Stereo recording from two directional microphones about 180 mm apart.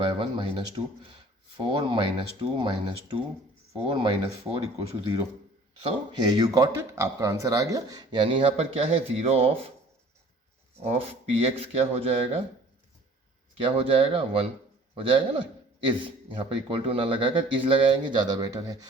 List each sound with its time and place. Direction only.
0.0 s a man's voice: 25° right (ahead or behind)
5.8 s a man's voice: 20° right (ahead or behind)
10.8 s speech: 35° right (ahead or behind)
13.6 s a man's voice: 30° right (ahead or behind)